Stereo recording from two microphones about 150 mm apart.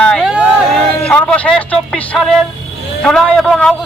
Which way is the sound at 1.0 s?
10° left (ahead or behind).